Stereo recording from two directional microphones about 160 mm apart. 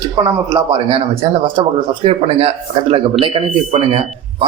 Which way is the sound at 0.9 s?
35° right (ahead or behind).